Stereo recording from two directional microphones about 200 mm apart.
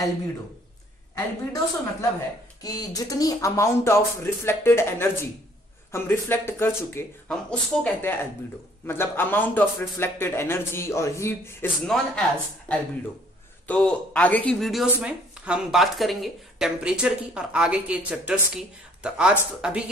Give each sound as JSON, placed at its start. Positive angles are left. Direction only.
{"t": 1.1, "sound": "a man's voice", "side_deg": 15}